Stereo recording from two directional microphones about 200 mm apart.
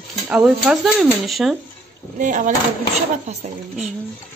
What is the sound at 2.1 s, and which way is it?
Speech, 40° right (ahead or behind).